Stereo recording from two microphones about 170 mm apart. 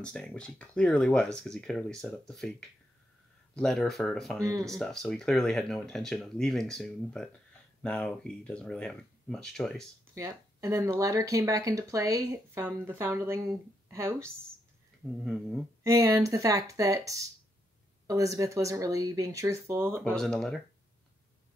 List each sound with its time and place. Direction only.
0.0 s speech: 5° left (ahead or behind)
3.5 s speech: 5° left (ahead or behind)
10.1 s speech: 15° right (ahead or behind)
15.2 s speech: centre (ahead or behind)
15.8 s speech: 20° right (ahead or behind)
20.2 s speech: centre (ahead or behind)